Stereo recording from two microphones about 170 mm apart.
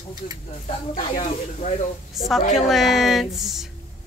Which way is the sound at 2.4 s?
40° left (ahead or behind).